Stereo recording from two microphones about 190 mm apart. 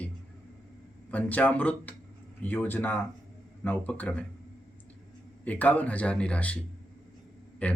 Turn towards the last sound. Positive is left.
turn(degrees=10)  # may be behind; listen again after turning